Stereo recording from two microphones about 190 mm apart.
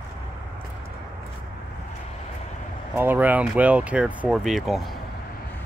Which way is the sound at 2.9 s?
10° right (ahead or behind).